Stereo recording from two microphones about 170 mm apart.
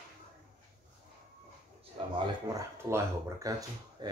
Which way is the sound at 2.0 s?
35° right (ahead or behind).